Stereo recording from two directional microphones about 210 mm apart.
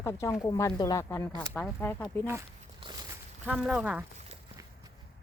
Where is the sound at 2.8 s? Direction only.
20° right (ahead or behind).